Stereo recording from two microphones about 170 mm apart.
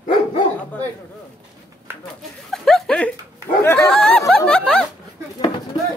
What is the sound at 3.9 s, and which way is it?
Speech, 5° left (ahead or behind).